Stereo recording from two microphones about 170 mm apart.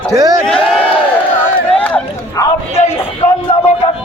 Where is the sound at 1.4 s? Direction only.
10° left (ahead or behind).